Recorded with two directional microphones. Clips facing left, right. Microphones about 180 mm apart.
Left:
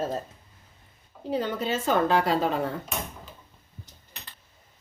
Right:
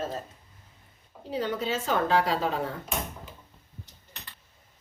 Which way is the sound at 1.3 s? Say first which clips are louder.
Left 2 dB; 55° left (ahead or behind).